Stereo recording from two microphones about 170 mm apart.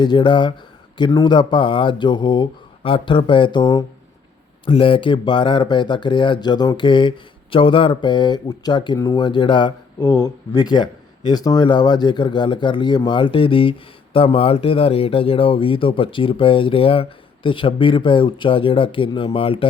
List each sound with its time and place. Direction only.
0.0 s speech: 25° left (ahead or behind)